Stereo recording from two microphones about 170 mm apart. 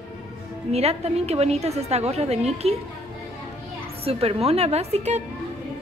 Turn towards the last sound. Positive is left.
turn(degrees=-40)  # may be behind; listen again after turning